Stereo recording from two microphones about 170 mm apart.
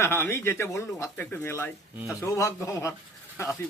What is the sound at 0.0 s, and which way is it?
Speech, 15° left (ahead or behind).